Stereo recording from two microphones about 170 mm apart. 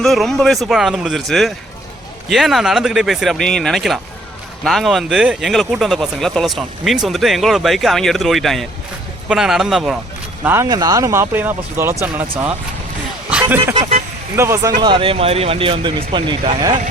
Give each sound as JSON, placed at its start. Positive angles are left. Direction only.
{"t": 0.0, "sound": "speech", "side_deg": 0}
{"t": 10.4, "sound": "speech", "side_deg": -15}
{"t": 13.3, "sound": "speech", "side_deg": -10}
{"t": 14.8, "sound": "speech", "side_deg": -30}